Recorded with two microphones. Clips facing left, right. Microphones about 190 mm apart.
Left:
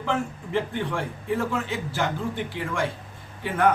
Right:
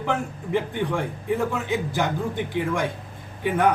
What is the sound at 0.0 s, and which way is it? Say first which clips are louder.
Speech: right 1 dB; 15° right (ahead or behind).